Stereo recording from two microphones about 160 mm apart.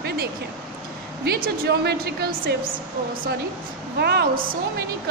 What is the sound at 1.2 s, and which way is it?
A woman's voice, 75° right (ahead or behind).